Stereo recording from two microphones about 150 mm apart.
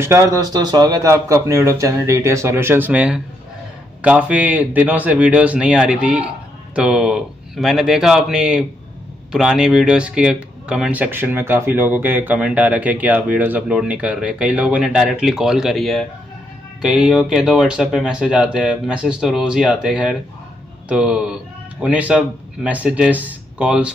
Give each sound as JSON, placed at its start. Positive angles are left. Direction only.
{"t": 0.0, "sound": "a man's voice", "side_deg": -20}